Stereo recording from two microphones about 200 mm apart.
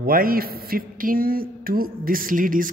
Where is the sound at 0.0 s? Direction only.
45° right (ahead or behind).